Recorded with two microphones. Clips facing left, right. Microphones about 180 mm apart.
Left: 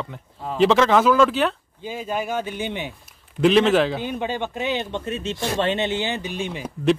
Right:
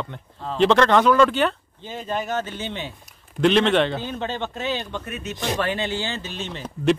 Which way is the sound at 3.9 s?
15° left (ahead or behind).